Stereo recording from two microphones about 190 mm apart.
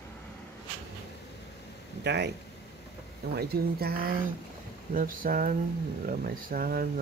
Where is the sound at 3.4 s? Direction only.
55° right (ahead or behind).